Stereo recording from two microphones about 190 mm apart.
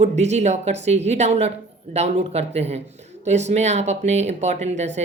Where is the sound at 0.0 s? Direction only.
35° right (ahead or behind).